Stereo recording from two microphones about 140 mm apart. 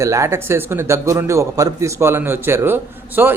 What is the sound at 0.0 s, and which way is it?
A man's voice, 20° right (ahead or behind).